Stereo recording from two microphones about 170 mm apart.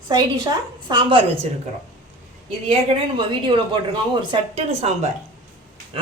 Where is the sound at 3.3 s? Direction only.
30° right (ahead or behind).